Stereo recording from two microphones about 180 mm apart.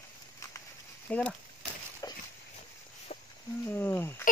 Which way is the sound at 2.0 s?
20° left (ahead or behind).